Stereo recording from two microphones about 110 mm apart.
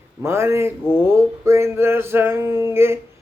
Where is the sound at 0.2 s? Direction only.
25° right (ahead or behind).